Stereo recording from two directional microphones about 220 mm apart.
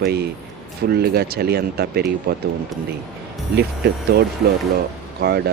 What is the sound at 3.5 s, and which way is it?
Speech, 45° right (ahead or behind).